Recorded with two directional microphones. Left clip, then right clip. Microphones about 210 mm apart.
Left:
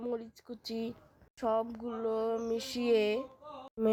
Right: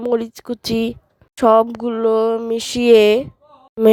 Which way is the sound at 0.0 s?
50° right (ahead or behind).